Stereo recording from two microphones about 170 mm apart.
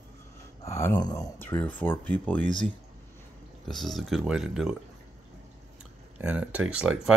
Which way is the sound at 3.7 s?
Centre (ahead or behind).